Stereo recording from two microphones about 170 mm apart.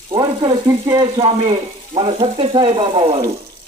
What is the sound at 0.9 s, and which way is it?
Frying, 30° right (ahead or behind).